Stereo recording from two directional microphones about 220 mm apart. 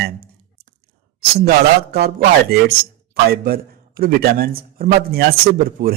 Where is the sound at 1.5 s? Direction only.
45° right (ahead or behind).